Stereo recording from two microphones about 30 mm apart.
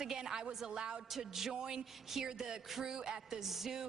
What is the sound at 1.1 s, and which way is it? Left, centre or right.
A woman's voice, centre.